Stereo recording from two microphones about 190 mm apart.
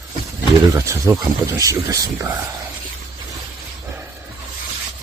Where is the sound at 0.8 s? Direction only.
15° right (ahead or behind).